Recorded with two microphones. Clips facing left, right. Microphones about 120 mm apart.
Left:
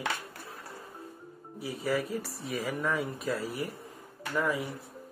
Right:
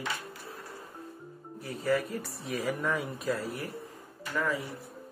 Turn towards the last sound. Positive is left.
turn(degrees=15)  # may be behind; listen again after turning